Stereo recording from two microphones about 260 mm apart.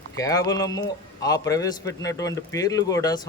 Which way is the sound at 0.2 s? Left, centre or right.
Centre.